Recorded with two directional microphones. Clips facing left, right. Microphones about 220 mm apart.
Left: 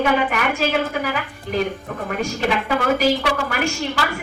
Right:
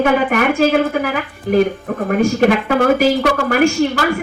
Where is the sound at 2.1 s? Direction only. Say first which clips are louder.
Right 9 dB; 50° right (ahead or behind).